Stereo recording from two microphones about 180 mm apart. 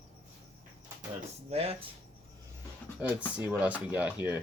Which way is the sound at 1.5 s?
35° right (ahead or behind).